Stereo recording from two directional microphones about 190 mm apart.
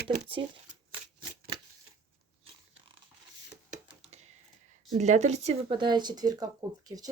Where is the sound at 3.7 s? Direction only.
35° right (ahead or behind).